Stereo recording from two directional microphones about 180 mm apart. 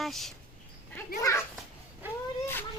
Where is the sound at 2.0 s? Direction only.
10° right (ahead or behind).